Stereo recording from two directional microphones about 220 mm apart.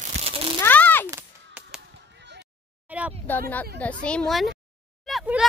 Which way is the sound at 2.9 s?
5° right (ahead or behind).